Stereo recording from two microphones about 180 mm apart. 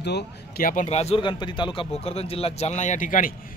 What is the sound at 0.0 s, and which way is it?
Speech, 60° left (ahead or behind).